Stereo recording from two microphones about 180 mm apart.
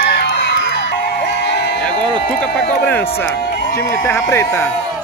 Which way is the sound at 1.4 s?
70° left (ahead or behind).